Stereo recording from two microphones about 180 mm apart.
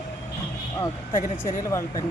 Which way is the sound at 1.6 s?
20° left (ahead or behind).